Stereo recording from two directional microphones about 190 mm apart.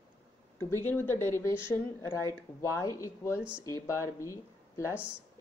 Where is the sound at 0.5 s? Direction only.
10° left (ahead or behind).